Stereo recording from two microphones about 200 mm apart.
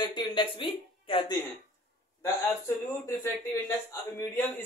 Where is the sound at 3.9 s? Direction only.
10° left (ahead or behind).